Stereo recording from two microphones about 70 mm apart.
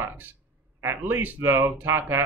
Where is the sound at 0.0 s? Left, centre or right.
Right.